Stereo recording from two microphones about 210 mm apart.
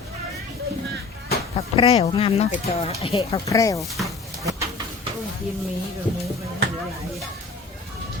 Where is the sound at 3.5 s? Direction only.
15° left (ahead or behind).